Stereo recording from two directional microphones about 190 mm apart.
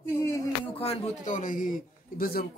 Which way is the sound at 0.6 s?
30° left (ahead or behind).